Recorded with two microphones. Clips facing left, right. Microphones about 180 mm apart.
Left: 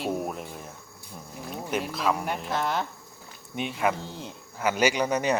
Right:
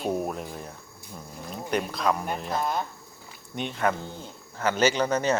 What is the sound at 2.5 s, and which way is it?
Speech, 80° left.